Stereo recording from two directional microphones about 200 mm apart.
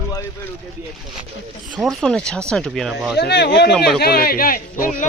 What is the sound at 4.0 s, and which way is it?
Speech, 50° left (ahead or behind).